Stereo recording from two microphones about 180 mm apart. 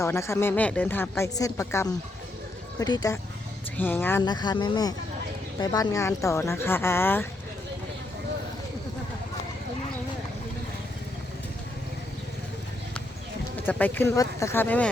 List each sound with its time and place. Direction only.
0.0 s a woman's voice: 15° left (ahead or behind)
3.8 s a woman's voice: 10° left (ahead or behind)
4.2 s a woman's voice: 25° left (ahead or behind)
13.7 s a woman's voice: 10° left (ahead or behind)